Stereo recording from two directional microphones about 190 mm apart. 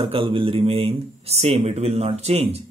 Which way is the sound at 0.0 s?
30° right (ahead or behind).